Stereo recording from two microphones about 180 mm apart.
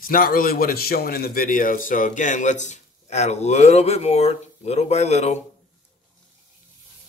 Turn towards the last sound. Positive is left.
turn(degrees=40)  # may be behind; listen again after turning